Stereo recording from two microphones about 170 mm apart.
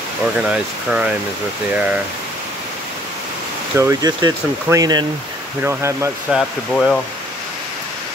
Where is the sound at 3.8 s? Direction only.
20° right (ahead or behind).